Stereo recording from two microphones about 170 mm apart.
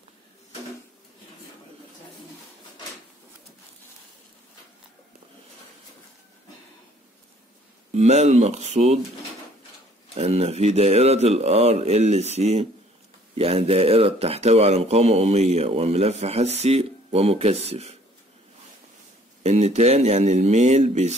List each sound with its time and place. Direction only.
7.9 s speech: 40° right (ahead or behind)
10.1 s speech: 40° right (ahead or behind)
19.4 s speech: 40° right (ahead or behind)